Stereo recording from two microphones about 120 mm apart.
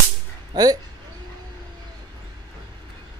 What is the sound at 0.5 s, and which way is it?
Speech, 35° right (ahead or behind).